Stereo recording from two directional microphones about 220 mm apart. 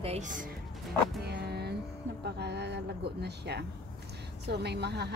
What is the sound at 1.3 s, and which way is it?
Music, 50° right (ahead or behind).